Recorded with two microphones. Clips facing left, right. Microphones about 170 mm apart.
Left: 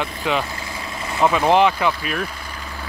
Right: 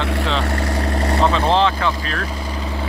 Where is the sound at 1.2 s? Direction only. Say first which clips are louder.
Left 2 dB; 15° left (ahead or behind).